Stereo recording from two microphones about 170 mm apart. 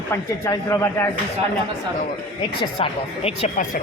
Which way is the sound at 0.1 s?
15° left (ahead or behind).